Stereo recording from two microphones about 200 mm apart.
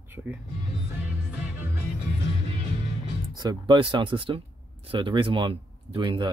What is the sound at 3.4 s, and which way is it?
Speech, 20° right (ahead or behind).